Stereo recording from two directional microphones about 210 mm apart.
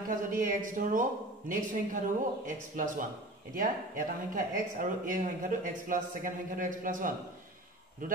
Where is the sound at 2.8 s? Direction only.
40° right (ahead or behind).